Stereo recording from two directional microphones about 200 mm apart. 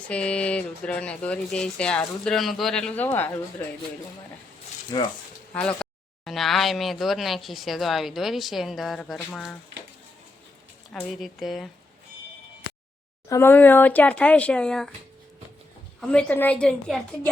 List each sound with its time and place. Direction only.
0.1 s speech: 5° left (ahead or behind)
4.9 s speech: 20° left (ahead or behind)
5.5 s speech: 5° left (ahead or behind)
11.2 s speech: centre (ahead or behind)
13.2 s speech: 15° left (ahead or behind)
16.0 s speech: 5° left (ahead or behind)